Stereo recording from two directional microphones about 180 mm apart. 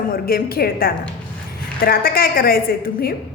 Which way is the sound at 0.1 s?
55° left (ahead or behind).